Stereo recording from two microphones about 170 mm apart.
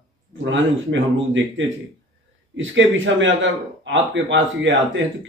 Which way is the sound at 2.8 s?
90° right.